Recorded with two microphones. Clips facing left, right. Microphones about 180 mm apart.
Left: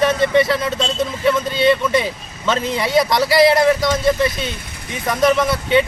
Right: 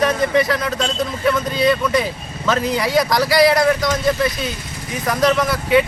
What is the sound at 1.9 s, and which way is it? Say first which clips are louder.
Speech: even; centre (ahead or behind).